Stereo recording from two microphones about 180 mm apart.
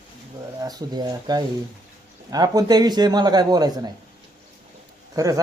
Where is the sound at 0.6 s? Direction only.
20° right (ahead or behind).